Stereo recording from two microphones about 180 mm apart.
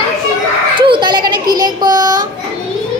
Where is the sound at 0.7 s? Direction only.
25° right (ahead or behind).